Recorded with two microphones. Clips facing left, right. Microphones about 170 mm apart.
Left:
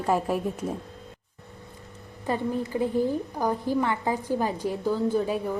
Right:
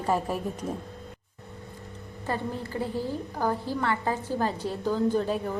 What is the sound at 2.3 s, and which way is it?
A woman's voice, 15° left (ahead or behind).